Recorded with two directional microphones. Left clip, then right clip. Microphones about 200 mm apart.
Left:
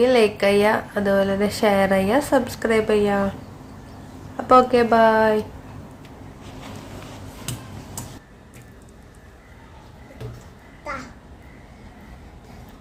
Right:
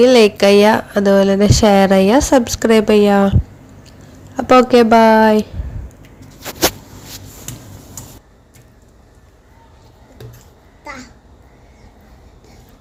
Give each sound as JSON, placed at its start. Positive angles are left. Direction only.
{"t": 0.0, "sound": "speech", "side_deg": -40}
{"t": 4.4, "sound": "speech", "side_deg": -35}